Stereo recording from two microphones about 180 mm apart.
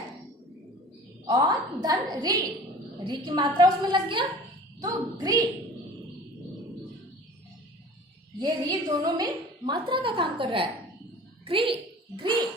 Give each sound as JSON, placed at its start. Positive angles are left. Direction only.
{"t": 1.2, "sound": "a woman's voice", "side_deg": -20}
{"t": 8.4, "sound": "a woman's voice", "side_deg": -20}